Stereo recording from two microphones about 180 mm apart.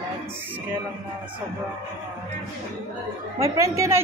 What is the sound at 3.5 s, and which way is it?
Speech, 15° right (ahead or behind).